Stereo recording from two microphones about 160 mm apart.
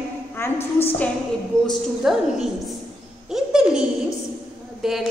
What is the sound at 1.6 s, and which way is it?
A woman's voice, centre (ahead or behind).